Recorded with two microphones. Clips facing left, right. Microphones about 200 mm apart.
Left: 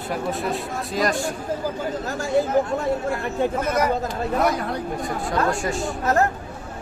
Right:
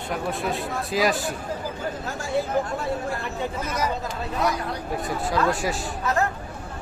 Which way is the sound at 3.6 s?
55° left (ahead or behind).